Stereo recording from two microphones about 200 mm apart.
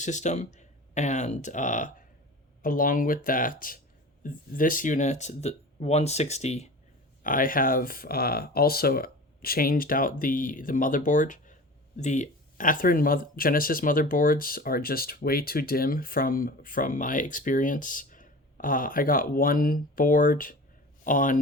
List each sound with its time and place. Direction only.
0.0 s speech: 35° left (ahead or behind)
7.2 s speech: 45° left (ahead or behind)